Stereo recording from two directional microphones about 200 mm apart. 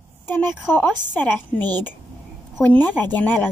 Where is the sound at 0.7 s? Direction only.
10° left (ahead or behind).